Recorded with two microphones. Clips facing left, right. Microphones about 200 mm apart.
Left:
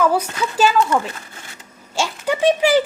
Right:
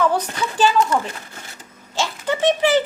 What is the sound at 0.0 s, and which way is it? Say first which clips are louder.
Speech: left 2 dB; 10° left (ahead or behind).